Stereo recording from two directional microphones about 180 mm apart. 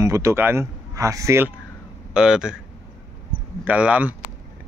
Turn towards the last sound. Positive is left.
turn(degrees=-5)  # may be behind; listen again after turning